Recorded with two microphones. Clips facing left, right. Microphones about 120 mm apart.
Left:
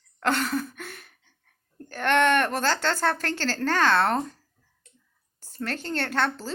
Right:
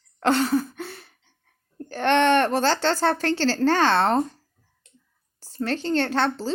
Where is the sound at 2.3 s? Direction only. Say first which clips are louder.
Right 4 dB; 30° right (ahead or behind).